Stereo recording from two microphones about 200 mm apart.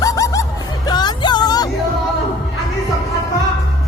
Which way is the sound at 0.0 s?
15° left (ahead or behind).